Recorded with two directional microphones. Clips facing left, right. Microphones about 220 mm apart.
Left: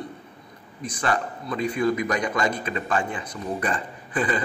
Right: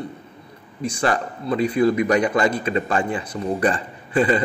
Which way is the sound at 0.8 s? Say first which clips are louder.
Right 4 dB; 30° right (ahead or behind).